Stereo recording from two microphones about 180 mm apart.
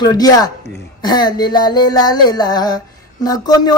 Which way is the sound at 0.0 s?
20° left (ahead or behind).